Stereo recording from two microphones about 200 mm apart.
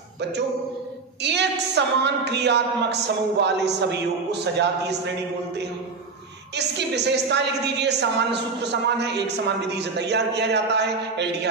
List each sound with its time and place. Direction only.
1.2 s a woman's voice: 60° right (ahead or behind)
6.5 s a woman's voice: 60° right (ahead or behind)